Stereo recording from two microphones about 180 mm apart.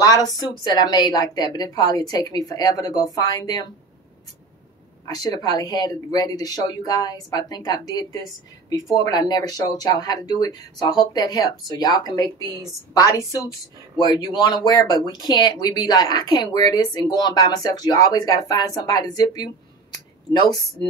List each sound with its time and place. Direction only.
0.0 s speech: 20° left (ahead or behind)
5.0 s speech: 20° left (ahead or behind)